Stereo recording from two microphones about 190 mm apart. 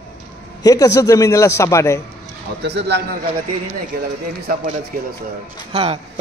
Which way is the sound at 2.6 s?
65° right (ahead or behind).